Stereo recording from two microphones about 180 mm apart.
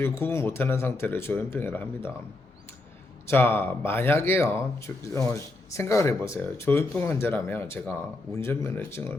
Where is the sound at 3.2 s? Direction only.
10° left (ahead or behind).